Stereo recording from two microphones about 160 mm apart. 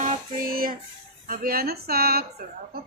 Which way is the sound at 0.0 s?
60° right (ahead or behind).